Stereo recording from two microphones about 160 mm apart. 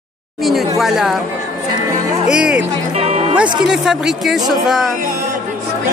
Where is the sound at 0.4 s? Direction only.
Centre (ahead or behind).